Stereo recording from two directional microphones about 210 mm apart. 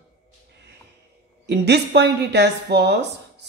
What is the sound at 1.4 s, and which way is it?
A woman's voice, 50° right (ahead or behind).